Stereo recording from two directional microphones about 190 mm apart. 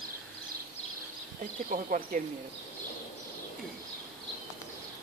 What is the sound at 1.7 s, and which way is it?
Speech, 45° right (ahead or behind).